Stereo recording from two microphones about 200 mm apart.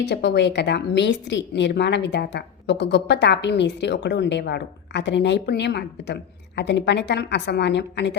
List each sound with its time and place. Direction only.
0.0 s a woman's voice: 60° left (ahead or behind)